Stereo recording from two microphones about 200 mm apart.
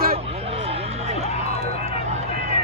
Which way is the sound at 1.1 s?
30° left (ahead or behind).